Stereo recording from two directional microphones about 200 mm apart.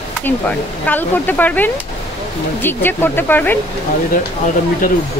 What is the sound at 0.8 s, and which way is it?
Speech, 10° left (ahead or behind).